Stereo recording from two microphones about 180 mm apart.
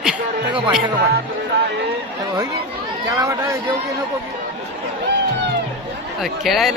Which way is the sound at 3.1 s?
20° right (ahead or behind).